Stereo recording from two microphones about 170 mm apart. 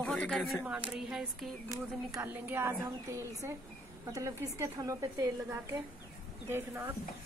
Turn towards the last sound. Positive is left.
turn(degrees=-15)  # may be behind; listen again after turning